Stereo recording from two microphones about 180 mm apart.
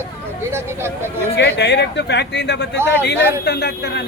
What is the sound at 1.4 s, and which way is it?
Speech, 70° left (ahead or behind).